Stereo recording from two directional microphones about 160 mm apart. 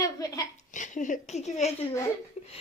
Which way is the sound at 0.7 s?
50° left (ahead or behind).